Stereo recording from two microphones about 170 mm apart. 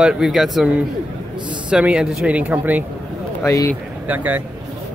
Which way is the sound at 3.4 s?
15° left (ahead or behind).